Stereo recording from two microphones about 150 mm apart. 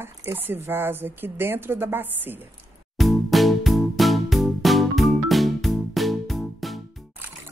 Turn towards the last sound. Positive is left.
turn(degrees=0)  # may be behind; listen again after turning